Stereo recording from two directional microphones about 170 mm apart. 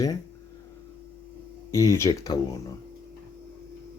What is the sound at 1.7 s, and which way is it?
Speech, 20° left (ahead or behind).